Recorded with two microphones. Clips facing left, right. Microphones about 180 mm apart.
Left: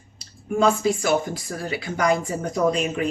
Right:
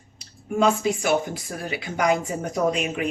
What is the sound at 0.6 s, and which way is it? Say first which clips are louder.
Speech: left 1 dB; 15° right (ahead or behind).